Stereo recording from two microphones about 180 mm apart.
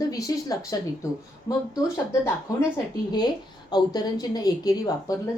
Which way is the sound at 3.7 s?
20° left (ahead or behind).